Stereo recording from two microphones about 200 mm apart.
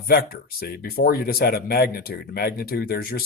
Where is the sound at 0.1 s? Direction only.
50° left (ahead or behind).